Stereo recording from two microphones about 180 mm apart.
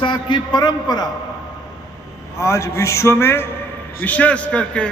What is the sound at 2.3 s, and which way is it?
A man's voice, 15° left (ahead or behind).